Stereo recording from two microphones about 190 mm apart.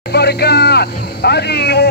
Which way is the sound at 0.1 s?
60° left (ahead or behind).